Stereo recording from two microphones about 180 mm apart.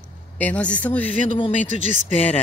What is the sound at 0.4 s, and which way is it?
Speech, 10° left (ahead or behind).